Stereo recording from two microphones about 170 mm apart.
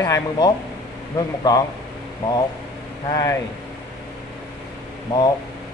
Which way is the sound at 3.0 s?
20° left (ahead or behind).